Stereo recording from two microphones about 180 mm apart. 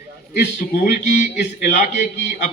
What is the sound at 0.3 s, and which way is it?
A man's voice, 50° left (ahead or behind).